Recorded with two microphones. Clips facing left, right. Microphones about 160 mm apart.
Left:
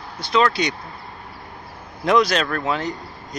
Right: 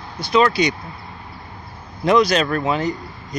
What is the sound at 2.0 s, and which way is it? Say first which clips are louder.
Speech: right 2 dB; centre (ahead or behind).